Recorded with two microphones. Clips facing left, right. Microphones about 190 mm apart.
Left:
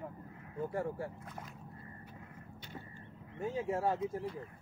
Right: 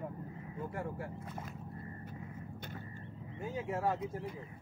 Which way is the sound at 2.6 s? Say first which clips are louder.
Right 3 dB; 50° right (ahead or behind).